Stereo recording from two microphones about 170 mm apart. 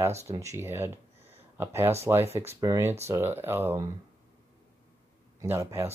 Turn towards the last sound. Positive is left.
turn(degrees=-15)  # may be behind; listen again after turning